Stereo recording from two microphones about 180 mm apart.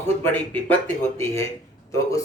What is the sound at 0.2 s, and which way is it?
A man's voice, 10° left (ahead or behind).